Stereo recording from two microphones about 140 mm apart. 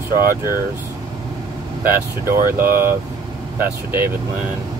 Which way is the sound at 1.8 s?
15° right (ahead or behind).